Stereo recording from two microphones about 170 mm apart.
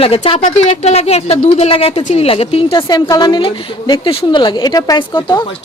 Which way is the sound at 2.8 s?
20° left (ahead or behind).